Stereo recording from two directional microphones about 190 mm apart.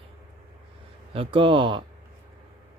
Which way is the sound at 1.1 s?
30° right (ahead or behind).